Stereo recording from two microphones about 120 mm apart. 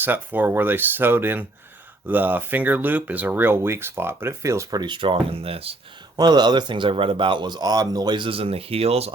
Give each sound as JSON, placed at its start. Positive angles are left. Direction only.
{"t": 0.0, "sound": "speech", "side_deg": -15}
{"t": 6.1, "sound": "speech", "side_deg": -35}